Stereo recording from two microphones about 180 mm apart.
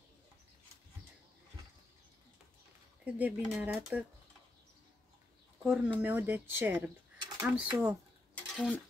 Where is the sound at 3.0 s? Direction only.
10° right (ahead or behind).